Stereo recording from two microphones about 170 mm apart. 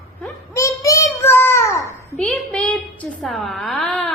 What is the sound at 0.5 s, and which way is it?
Child singing, 20° left (ahead or behind).